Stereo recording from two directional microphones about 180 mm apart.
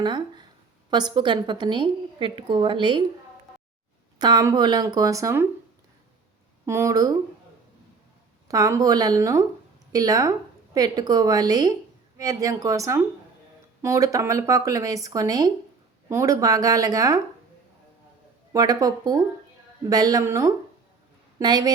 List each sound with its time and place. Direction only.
0.0 s a woman's voice: 25° right (ahead or behind)
4.2 s a woman's voice: 20° right (ahead or behind)
6.7 s a woman's voice: 15° right (ahead or behind)
8.4 s a woman's voice: 20° right (ahead or behind)
18.5 s a woman's voice: 20° right (ahead or behind)